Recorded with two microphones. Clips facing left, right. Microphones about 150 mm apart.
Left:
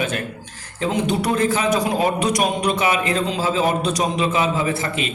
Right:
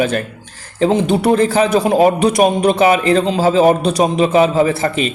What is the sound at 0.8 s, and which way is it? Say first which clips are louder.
A man's voice: right 7 dB; 30° right (ahead or behind).